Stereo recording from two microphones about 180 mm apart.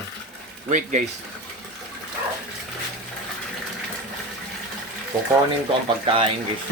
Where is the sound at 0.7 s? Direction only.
45° right (ahead or behind).